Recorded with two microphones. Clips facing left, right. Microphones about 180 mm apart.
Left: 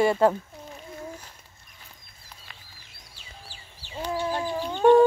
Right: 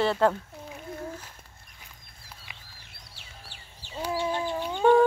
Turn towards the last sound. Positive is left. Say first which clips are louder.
# left 1 dB
turn(degrees=0)  # may be behind; listen again after turning